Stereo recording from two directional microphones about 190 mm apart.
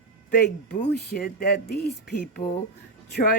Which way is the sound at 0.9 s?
55° left (ahead or behind).